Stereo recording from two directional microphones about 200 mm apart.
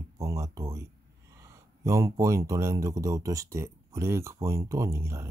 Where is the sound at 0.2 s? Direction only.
15° right (ahead or behind).